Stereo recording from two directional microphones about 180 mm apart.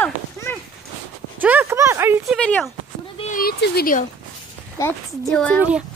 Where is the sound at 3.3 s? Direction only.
55° left (ahead or behind).